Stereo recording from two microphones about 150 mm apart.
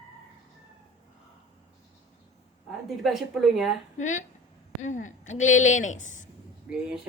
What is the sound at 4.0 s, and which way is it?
A woman's voice, 55° left (ahead or behind).